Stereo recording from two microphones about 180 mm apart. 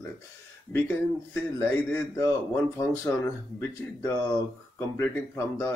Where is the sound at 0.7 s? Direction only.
15° left (ahead or behind).